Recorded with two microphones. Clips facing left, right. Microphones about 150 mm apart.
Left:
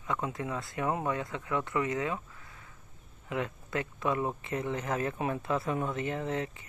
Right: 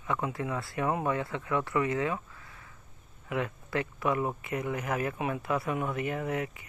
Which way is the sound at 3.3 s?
20° left (ahead or behind).